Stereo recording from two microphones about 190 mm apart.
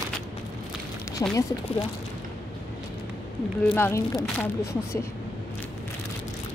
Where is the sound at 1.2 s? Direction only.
15° left (ahead or behind).